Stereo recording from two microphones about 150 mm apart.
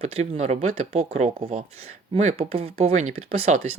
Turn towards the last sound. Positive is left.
turn(degrees=-45)  # may be behind; listen again after turning